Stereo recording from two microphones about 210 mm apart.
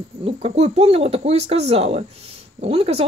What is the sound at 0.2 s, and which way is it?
Speech, 25° right (ahead or behind).